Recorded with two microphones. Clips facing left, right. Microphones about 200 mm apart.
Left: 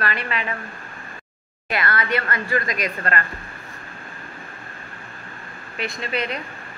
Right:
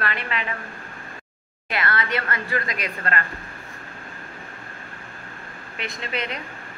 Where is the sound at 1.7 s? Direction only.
25° right (ahead or behind).